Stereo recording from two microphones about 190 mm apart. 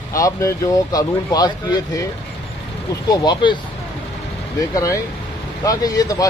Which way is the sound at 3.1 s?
20° left (ahead or behind).